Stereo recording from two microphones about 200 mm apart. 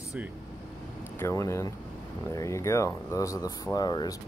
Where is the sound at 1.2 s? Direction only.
15° left (ahead or behind).